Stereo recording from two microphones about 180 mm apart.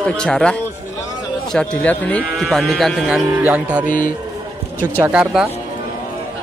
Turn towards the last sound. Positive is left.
turn(degrees=-5)  # may be behind; listen again after turning